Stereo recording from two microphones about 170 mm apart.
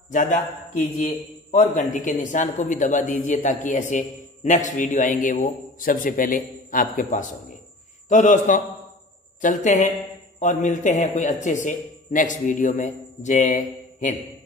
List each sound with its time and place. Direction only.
0.1 s a man's voice: 50° left (ahead or behind)
1.5 s a man's voice: 45° left (ahead or behind)